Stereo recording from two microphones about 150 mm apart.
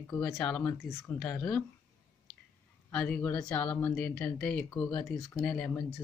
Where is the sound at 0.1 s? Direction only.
5° left (ahead or behind).